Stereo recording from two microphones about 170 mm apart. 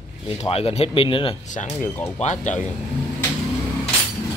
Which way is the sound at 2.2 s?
45° left (ahead or behind).